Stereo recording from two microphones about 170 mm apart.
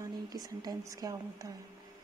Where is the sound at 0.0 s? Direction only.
20° right (ahead or behind).